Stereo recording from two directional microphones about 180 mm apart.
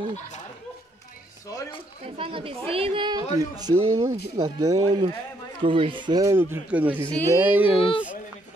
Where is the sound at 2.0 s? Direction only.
30° right (ahead or behind); by 7.7 s 10° right (ahead or behind).